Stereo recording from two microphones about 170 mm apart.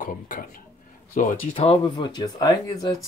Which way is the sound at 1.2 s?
40° left (ahead or behind).